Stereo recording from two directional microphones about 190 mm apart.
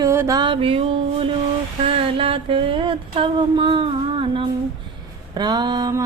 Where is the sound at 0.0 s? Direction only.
15° right (ahead or behind).